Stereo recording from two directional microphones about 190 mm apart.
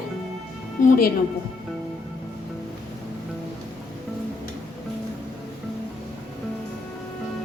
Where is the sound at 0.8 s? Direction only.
45° left (ahead or behind).